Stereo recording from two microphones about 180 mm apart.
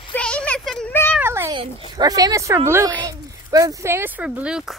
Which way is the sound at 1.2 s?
15° right (ahead or behind).